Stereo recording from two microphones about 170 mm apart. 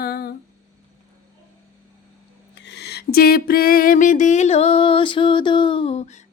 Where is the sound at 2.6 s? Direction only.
85° left; by 6.2 s 40° left (ahead or behind).